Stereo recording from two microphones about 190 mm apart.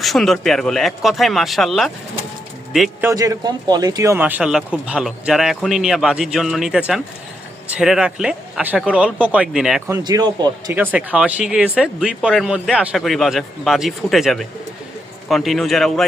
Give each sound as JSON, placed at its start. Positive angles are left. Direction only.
{"t": 0.0, "sound": "speech", "side_deg": 0}
{"t": 3.1, "sound": "speech", "side_deg": -20}
{"t": 9.9, "sound": "speech", "side_deg": -20}
{"t": 10.8, "sound": "speech", "side_deg": -5}